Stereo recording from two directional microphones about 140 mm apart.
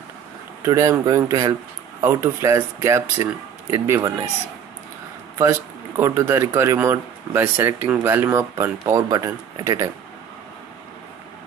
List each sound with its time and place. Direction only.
0.6 s speech: 20° right (ahead or behind)
5.4 s speech: 20° right (ahead or behind)